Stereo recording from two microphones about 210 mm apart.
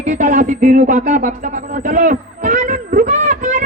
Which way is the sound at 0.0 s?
35° right (ahead or behind).